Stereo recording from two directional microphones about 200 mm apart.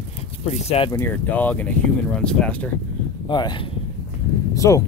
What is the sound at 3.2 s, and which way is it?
Speech, 20° left (ahead or behind).